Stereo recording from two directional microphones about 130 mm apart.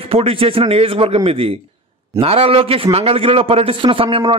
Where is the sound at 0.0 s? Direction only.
45° right (ahead or behind).